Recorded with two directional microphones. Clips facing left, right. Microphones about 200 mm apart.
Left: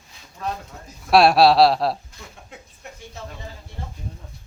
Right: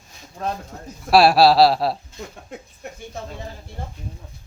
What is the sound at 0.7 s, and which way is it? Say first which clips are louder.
Speech: right 4 dB; 45° right (ahead or behind).